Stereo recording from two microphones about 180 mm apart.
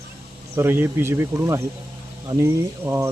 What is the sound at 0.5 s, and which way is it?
Speech, 15° right (ahead or behind).